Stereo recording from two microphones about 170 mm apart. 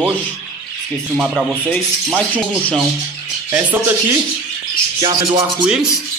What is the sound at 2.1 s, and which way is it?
Speech, 5° right (ahead or behind).